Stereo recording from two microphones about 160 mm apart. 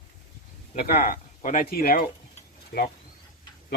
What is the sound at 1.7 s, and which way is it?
Speech, 70° left (ahead or behind).